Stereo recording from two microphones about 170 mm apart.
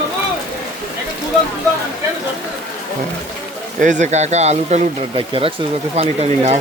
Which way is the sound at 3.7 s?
50° right (ahead or behind).